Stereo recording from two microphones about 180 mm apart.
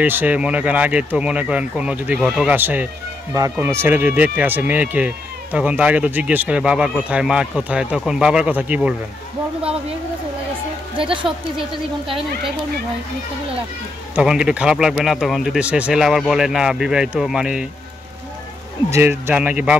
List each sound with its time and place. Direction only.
0.0 s speech: 10° right (ahead or behind)
11.0 s a woman's voice: 30° right (ahead or behind)
14.1 s speech: 5° right (ahead or behind)
18.9 s speech: 15° right (ahead or behind)